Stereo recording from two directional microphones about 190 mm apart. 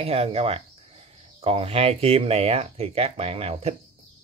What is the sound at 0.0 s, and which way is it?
Speech, 30° right (ahead or behind).